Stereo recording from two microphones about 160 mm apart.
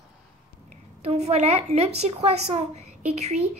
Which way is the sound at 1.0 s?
45° right (ahead or behind).